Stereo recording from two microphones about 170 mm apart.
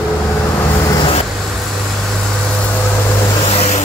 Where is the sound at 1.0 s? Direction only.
35° left (ahead or behind).